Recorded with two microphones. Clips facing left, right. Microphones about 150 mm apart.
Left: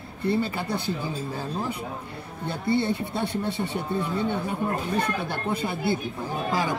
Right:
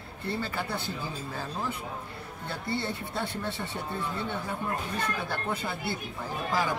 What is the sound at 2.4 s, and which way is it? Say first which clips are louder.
Speech: left 8 dB; 15° left (ahead or behind).